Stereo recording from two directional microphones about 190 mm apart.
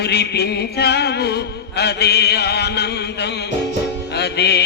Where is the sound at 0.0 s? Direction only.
60° left (ahead or behind).